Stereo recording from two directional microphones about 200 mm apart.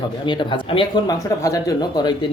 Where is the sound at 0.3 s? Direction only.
25° left (ahead or behind).